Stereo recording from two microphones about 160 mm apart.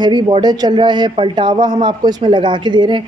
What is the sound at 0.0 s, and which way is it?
Speech, 25° right (ahead or behind).